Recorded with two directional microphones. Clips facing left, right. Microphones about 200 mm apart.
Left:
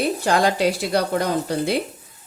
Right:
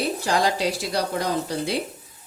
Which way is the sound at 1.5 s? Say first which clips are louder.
Left 4 dB; 55° left (ahead or behind).